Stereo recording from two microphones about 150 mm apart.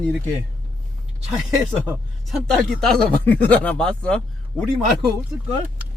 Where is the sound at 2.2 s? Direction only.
Centre (ahead or behind).